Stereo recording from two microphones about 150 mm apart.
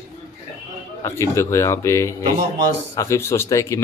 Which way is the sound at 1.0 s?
20° left (ahead or behind).